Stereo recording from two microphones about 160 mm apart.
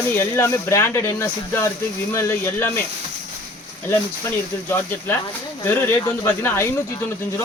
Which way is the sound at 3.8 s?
15° left (ahead or behind).